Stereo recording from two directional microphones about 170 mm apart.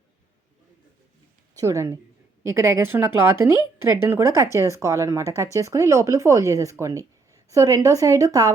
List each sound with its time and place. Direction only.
1.5 s speech: 15° right (ahead or behind)